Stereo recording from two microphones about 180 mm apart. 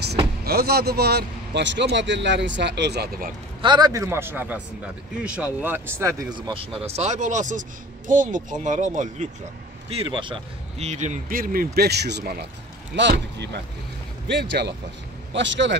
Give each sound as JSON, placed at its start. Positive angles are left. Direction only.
{"t": 0.5, "sound": "a man's voice", "side_deg": -60}
{"t": 3.6, "sound": "speech", "side_deg": -25}
{"t": 6.3, "sound": "speech", "side_deg": -25}
{"t": 9.8, "sound": "a man's voice", "side_deg": -30}
{"t": 15.3, "sound": "a man's voice", "side_deg": -90}